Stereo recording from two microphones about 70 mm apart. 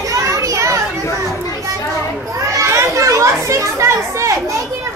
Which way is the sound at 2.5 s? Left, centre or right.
Right.